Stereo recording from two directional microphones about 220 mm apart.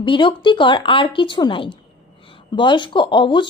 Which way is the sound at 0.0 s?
20° left (ahead or behind).